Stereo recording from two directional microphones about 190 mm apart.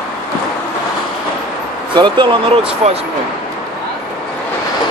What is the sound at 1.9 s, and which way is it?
Speech, 25° right (ahead or behind).